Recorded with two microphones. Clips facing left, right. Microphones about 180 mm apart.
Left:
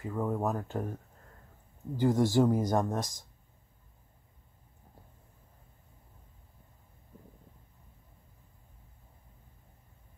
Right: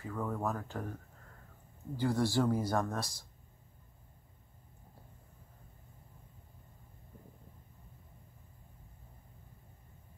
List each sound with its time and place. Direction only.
0.0 s speech: 20° left (ahead or behind)
2.0 s speech: 20° left (ahead or behind)